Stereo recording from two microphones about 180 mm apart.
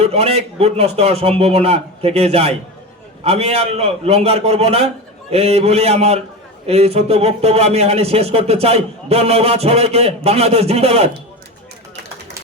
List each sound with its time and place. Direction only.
0.0 s speech: 35° right (ahead or behind)